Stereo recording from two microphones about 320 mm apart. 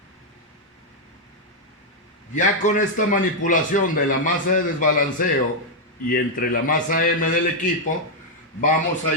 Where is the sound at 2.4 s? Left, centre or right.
Left.